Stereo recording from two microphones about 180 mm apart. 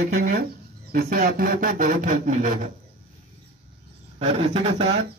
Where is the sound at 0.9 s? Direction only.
55° right (ahead or behind).